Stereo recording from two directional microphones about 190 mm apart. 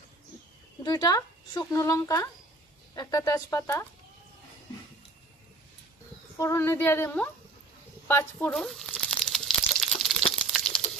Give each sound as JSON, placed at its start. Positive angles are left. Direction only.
{"t": 0.8, "sound": "speech", "side_deg": 20}
{"t": 6.3, "sound": "speech", "side_deg": 15}
{"t": 8.1, "sound": "crumpling", "side_deg": 10}